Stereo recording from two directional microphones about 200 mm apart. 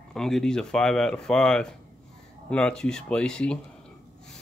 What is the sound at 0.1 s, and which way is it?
Speech, centre (ahead or behind).